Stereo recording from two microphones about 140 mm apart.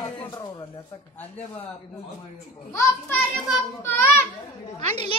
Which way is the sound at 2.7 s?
20° left (ahead or behind).